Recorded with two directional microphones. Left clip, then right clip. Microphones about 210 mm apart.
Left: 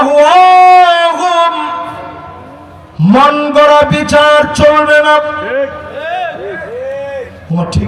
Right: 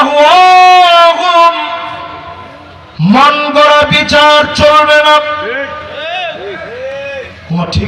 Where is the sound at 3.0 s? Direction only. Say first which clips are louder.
Right 1 dB; 55° left (ahead or behind).